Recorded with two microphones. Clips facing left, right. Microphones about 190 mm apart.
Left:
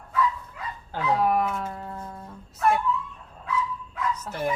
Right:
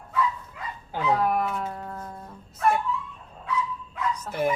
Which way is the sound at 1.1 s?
Centre (ahead or behind).